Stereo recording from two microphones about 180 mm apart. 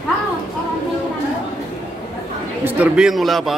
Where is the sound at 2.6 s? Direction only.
5° right (ahead or behind).